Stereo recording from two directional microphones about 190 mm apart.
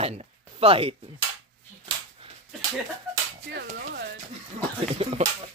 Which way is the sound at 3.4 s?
60° right (ahead or behind).